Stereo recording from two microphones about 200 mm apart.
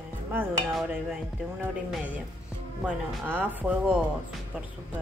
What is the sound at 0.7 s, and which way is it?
Speech, centre (ahead or behind).